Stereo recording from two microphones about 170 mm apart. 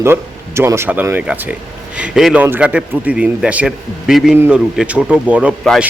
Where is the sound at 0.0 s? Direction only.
15° right (ahead or behind).